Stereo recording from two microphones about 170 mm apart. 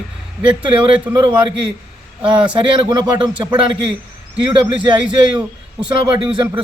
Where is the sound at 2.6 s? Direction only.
30° right (ahead or behind).